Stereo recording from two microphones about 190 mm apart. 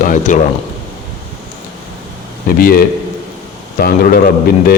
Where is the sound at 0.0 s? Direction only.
45° left (ahead or behind).